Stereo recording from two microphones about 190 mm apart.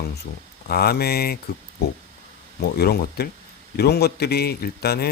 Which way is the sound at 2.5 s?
55° left (ahead or behind).